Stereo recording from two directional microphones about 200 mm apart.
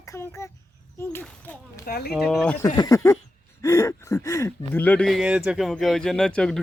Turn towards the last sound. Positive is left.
turn(degrees=5)  # may be behind; listen again after turning